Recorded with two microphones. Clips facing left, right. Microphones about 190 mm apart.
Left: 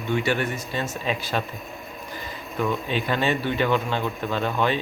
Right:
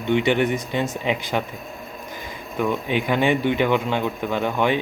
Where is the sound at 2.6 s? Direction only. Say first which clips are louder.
Right 3 dB; 15° right (ahead or behind).